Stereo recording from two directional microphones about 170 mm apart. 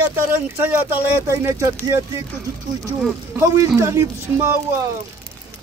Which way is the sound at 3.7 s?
15° right (ahead or behind).